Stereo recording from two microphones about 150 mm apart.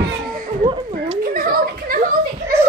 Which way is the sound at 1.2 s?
75° right (ahead or behind).